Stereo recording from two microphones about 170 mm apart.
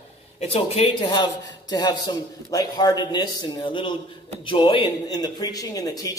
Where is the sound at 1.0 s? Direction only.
30° left (ahead or behind).